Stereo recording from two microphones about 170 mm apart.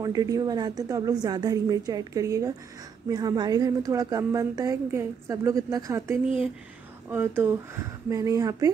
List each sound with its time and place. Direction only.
0.0 s speech: 20° right (ahead or behind)